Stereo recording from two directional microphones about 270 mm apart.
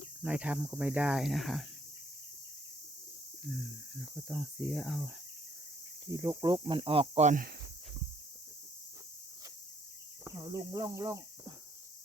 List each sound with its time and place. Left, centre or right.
0.2 s speech: centre
3.4 s speech: centre
6.1 s speech: centre; by 7.5 s right
10.2 s speech: centre